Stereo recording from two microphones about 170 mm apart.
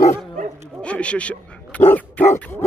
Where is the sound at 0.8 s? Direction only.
5° left (ahead or behind).